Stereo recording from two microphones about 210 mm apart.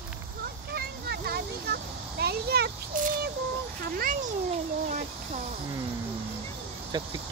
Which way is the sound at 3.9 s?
45° right (ahead or behind).